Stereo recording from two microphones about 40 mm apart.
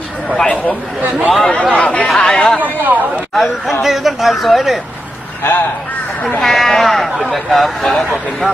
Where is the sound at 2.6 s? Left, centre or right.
Right.